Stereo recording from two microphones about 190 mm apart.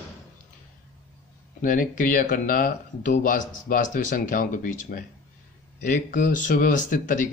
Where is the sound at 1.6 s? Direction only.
45° left (ahead or behind).